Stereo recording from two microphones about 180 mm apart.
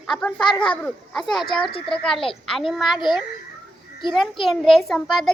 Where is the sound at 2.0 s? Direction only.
Centre (ahead or behind).